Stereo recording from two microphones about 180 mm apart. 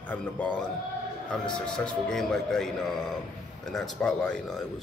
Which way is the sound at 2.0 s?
Centre (ahead or behind).